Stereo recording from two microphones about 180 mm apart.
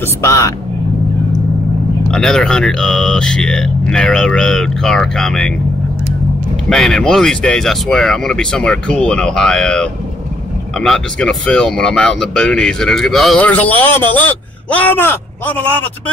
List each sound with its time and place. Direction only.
0.2 s speech: 20° left (ahead or behind)
2.0 s speech: 5° left (ahead or behind)
6.7 s speech: 5° left (ahead or behind)